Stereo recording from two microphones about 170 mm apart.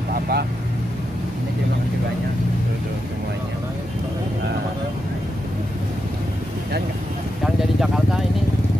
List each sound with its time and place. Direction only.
0.1 s vehicle: 65° right (ahead or behind)
7.4 s vehicle: 5° right (ahead or behind)